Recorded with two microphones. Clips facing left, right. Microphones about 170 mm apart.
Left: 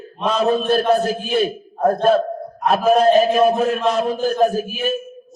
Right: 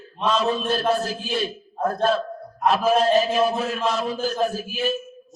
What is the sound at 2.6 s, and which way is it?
A man's voice, 50° left (ahead or behind).